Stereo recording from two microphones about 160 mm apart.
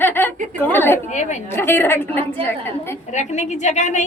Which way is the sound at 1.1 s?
50° left (ahead or behind).